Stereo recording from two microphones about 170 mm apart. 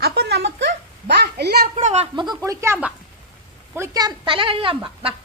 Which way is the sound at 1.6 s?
45° right (ahead or behind).